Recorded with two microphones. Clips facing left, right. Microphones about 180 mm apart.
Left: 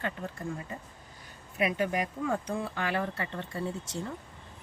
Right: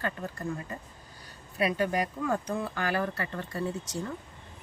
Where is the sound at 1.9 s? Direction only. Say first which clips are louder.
Right 1 dB; 40° right (ahead or behind).